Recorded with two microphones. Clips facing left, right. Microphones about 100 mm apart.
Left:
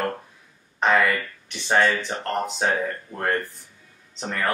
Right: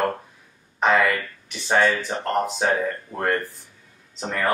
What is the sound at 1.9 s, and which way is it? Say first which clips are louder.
Speech: right 1 dB; 5° right (ahead or behind).